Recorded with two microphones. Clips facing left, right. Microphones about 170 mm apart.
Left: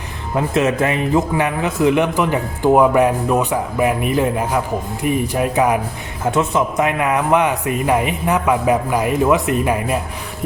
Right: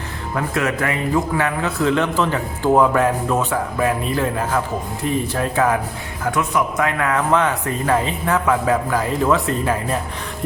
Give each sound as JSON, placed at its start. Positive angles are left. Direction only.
{"t": 0.3, "sound": "a man's voice", "side_deg": 20}